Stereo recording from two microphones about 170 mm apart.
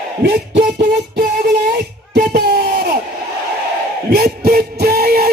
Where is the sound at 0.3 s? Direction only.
70° right (ahead or behind).